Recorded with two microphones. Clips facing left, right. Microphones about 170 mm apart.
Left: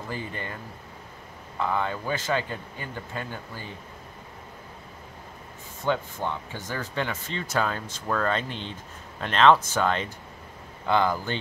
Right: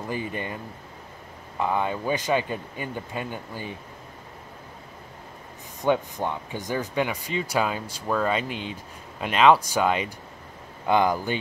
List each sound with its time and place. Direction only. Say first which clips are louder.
0.1 s speech: right 4 dB; 15° right (ahead or behind)
1.6 s speech: right 2 dB; 15° right (ahead or behind)
5.8 s speech: right 4 dB; 15° right (ahead or behind)